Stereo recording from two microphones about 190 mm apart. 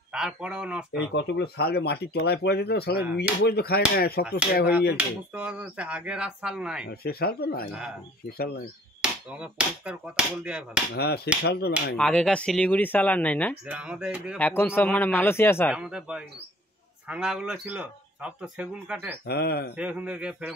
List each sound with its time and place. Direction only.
0.1 s speech: 5° right (ahead or behind)
1.1 s speech: 60° left (ahead or behind)
4.9 s speech: 5° right (ahead or behind)
6.9 s speech: 55° left (ahead or behind)
9.0 s speech: 5° right (ahead or behind)
11.0 s speech: 55° left (ahead or behind)
12.0 s speech: 5° left (ahead or behind)
13.7 s speech: 5° right (ahead or behind)
14.4 s speech: 10° left (ahead or behind)
15.7 s speech: 5° right (ahead or behind)
19.2 s speech: 55° left (ahead or behind)
19.7 s speech: 5° right (ahead or behind)